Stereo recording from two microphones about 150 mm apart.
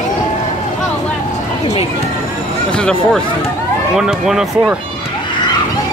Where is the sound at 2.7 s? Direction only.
5° left (ahead or behind).